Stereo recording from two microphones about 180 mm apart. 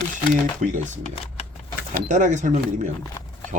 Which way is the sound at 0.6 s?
45° right (ahead or behind).